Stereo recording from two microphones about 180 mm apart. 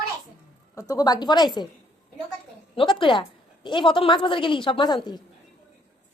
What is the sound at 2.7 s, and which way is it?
A woman's voice, 30° left (ahead or behind).